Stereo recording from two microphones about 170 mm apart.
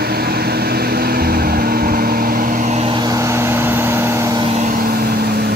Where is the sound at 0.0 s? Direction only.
65° right (ahead or behind); by 3.0 s 40° right (ahead or behind).